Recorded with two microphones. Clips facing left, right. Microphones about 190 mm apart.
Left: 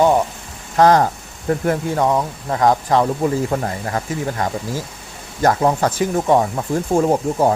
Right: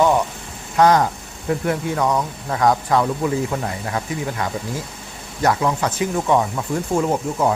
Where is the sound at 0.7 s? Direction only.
35° left (ahead or behind).